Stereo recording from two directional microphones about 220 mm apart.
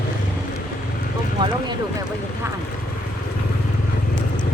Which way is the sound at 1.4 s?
15° right (ahead or behind).